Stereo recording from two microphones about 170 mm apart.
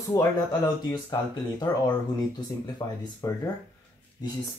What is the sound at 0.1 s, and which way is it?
Speech, 25° left (ahead or behind).